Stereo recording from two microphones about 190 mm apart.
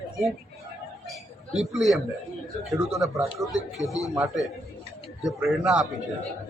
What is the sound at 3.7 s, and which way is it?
Speech, 15° left (ahead or behind).